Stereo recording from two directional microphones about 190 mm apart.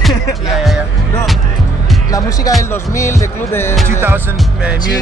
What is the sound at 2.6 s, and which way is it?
Music, 15° left (ahead or behind).